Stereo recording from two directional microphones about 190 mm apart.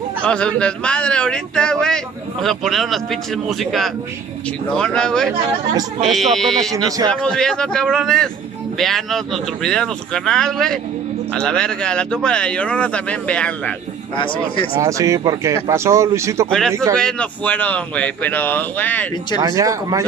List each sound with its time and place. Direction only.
0.2 s speech: 5° left (ahead or behind)
14.1 s speech: 25° left (ahead or behind)
14.8 s speech: 15° right (ahead or behind)
16.4 s speech: 5° left (ahead or behind)
19.4 s speech: 15° right (ahead or behind)